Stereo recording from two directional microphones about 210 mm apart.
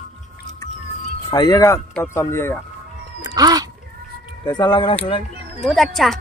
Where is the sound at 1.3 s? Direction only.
15° left (ahead or behind).